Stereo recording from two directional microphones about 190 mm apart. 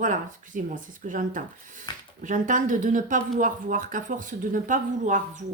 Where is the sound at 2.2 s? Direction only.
45° right (ahead or behind).